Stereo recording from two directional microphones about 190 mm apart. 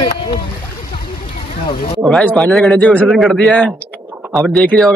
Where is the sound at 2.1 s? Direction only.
Centre (ahead or behind).